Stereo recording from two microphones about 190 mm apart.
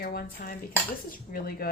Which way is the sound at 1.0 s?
50° left (ahead or behind).